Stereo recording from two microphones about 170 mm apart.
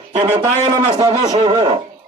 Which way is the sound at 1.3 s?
30° right (ahead or behind).